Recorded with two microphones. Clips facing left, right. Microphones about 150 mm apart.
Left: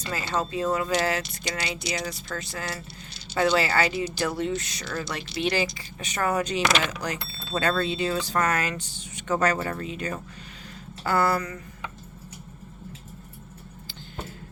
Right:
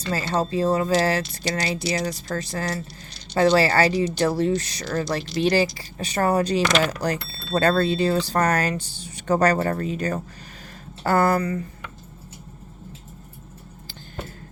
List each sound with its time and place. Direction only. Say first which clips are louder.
0.1 s speech: right 5 dB; 35° right (ahead or behind)